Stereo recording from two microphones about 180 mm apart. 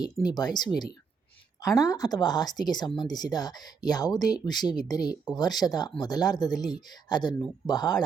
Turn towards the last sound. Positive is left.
turn(degrees=20)  # may be behind; listen again after turning